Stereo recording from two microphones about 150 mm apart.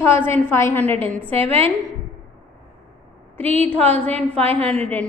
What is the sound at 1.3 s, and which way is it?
Speech, 40° right (ahead or behind).